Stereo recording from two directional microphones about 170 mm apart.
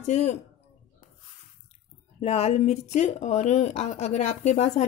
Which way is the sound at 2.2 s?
35° left (ahead or behind).